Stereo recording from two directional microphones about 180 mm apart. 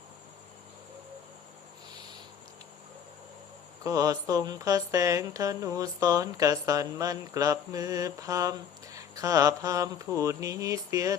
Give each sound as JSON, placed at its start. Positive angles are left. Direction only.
{"t": 3.8, "sound": "speech", "side_deg": -20}